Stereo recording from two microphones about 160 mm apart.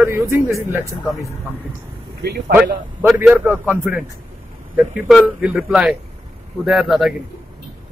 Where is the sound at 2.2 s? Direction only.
90° right.